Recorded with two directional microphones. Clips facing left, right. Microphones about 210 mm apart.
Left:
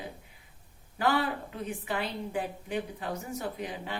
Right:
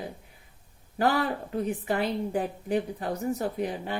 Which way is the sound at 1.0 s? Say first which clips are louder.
Right 3 dB; 40° right (ahead or behind).